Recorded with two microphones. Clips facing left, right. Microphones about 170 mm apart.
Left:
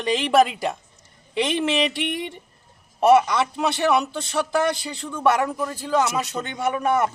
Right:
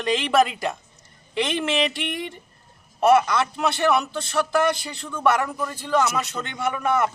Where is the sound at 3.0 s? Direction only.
15° left (ahead or behind).